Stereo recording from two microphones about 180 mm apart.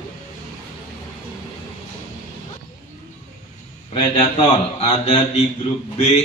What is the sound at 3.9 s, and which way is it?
A man's voice, 35° left (ahead or behind).